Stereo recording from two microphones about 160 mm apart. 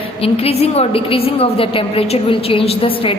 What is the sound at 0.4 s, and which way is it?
A woman's voice, 40° left (ahead or behind).